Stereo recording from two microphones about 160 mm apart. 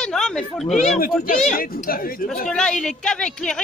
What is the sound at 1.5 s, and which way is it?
Speech, 65° left (ahead or behind).